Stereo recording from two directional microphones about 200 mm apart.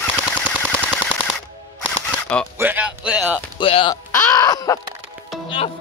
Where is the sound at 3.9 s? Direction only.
15° left (ahead or behind).